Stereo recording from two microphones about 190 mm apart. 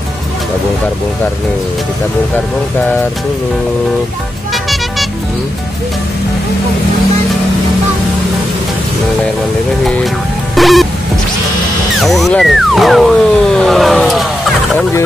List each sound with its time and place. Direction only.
10.5 s music: centre (ahead or behind)
12.0 s speech: centre (ahead or behind)